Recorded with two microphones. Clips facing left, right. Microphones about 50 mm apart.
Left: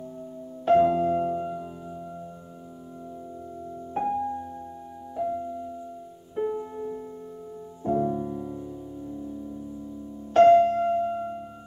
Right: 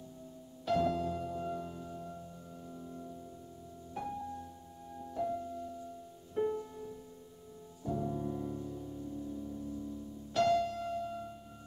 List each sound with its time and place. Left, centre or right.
0.7 s music: left
1.4 s music: centre
3.9 s music: left
5.1 s music: centre
6.6 s music: left
8.2 s music: centre
10.3 s music: left